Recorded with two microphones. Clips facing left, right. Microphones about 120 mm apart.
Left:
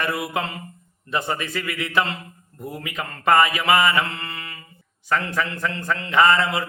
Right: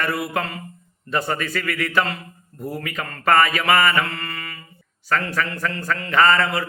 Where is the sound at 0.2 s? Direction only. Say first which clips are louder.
Right 1 dB; 20° left (ahead or behind).